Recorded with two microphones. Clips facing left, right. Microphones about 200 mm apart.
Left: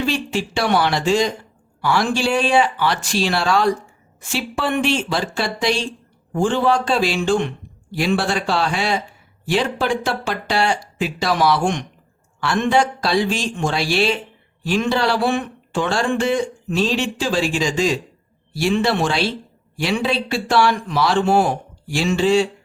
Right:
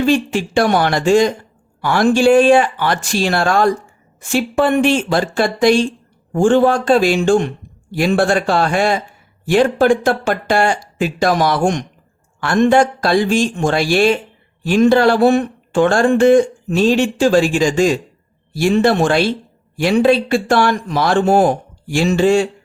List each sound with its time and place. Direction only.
0.0 s speech: 50° right (ahead or behind)